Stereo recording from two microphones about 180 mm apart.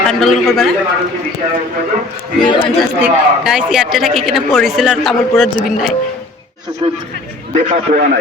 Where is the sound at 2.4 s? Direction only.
25° left (ahead or behind).